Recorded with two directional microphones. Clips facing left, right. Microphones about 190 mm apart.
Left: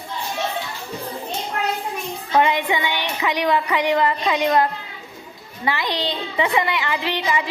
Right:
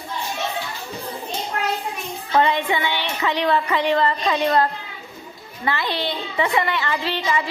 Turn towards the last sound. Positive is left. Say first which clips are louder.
# even
turn(degrees=15)  # may be behind; listen again after turning